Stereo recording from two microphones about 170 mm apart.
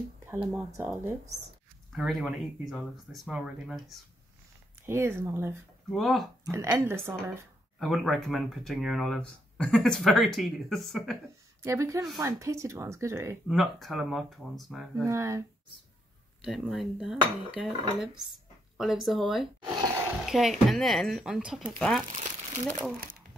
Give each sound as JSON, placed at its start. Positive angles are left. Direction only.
{"t": 0.3, "sound": "speech", "side_deg": -10}
{"t": 1.9, "sound": "speech", "side_deg": 0}
{"t": 4.8, "sound": "speech", "side_deg": -15}
{"t": 5.9, "sound": "speech", "side_deg": 0}
{"t": 6.4, "sound": "speech", "side_deg": -20}
{"t": 7.8, "sound": "speech", "side_deg": 0}
{"t": 11.6, "sound": "speech", "side_deg": -15}
{"t": 13.5, "sound": "speech", "side_deg": 0}
{"t": 15.0, "sound": "speech", "side_deg": -15}
{"t": 16.4, "sound": "speech", "side_deg": 0}
{"t": 22.1, "sound": "crumpling", "side_deg": -45}